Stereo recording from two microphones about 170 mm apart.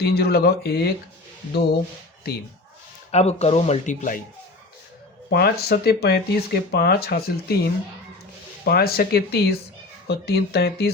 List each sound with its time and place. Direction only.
0.0 s speech: 70° left (ahead or behind)
3.1 s speech: 40° left (ahead or behind)
5.3 s speech: 65° left (ahead or behind)